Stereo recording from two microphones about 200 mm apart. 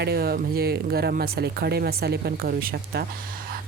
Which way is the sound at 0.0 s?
50° right (ahead or behind).